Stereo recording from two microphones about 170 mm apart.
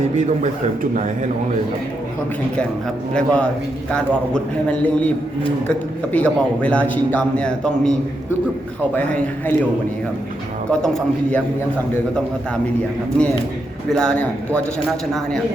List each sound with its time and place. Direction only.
0.2 s a man's voice: 45° right (ahead or behind)
3.2 s a man's voice: 5° left (ahead or behind)
6.1 s a man's voice: 5° left (ahead or behind)
10.7 s a man's voice: 5° left (ahead or behind)
13.9 s a man's voice: 5° left (ahead or behind)